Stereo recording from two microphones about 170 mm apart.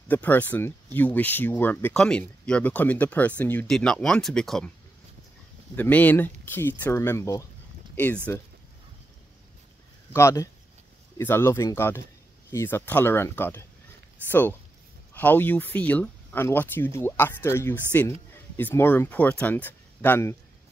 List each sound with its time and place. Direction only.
0.1 s speech: 10° left (ahead or behind)
5.8 s speech: 10° left (ahead or behind)
10.1 s speech: 15° left (ahead or behind)